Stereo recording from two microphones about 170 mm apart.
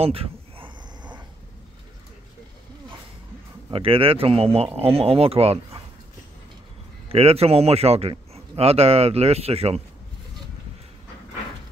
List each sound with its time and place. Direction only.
0.0 s a sound: 35° right (ahead or behind)
3.7 s a man's voice: 30° right (ahead or behind)
7.1 s a man's voice: 35° right (ahead or behind)